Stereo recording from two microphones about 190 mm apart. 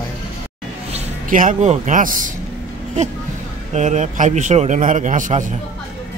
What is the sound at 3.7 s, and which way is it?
A man's voice, 40° right (ahead or behind).